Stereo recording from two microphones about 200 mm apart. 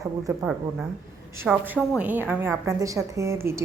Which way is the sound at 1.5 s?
5° right (ahead or behind).